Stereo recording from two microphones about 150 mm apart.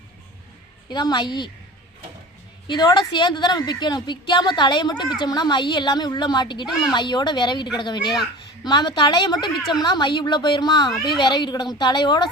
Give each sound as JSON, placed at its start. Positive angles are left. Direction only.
{"t": 0.9, "sound": "a woman's voice", "side_deg": 30}
{"t": 2.6, "sound": "a woman's voice", "side_deg": 30}